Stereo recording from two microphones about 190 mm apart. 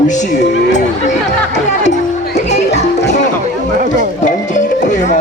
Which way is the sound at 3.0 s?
65° left (ahead or behind).